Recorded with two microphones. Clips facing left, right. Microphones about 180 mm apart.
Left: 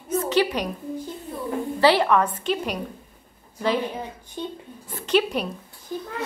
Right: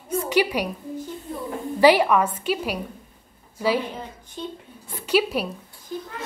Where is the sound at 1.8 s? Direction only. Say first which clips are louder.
Right 2 dB; 10° right (ahead or behind).